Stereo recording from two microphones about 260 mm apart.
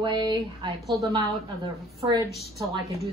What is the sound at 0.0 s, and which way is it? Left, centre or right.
Speech, centre.